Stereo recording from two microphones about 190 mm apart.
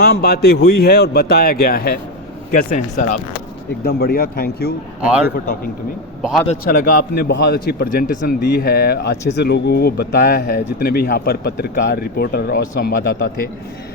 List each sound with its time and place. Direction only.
0.0 s speech: 55° left (ahead or behind)
3.8 s speech: 50° left (ahead or behind)
5.0 s a man's voice: 5° right (ahead or behind)
6.7 s speech: 50° left (ahead or behind)